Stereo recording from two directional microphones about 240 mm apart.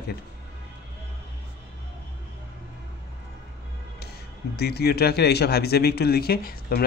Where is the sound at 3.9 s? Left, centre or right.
Left.